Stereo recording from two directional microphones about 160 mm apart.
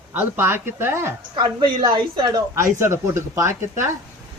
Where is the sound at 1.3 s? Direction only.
30° right (ahead or behind).